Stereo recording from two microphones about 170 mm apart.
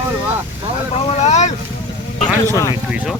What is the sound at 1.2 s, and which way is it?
Boat, 40° left (ahead or behind).